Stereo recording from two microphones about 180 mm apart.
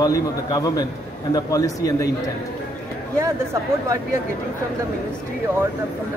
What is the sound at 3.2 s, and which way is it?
Speech, 15° right (ahead or behind).